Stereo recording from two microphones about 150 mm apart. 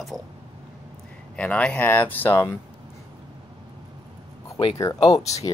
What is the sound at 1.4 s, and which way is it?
Speech, 10° left (ahead or behind).